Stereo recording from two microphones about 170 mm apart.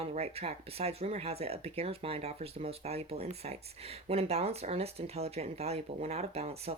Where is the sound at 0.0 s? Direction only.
35° right (ahead or behind).